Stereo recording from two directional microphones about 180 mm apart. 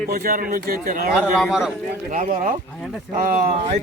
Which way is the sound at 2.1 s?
45° right (ahead or behind).